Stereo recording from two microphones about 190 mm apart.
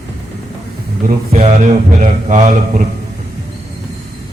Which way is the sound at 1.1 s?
35° right (ahead or behind).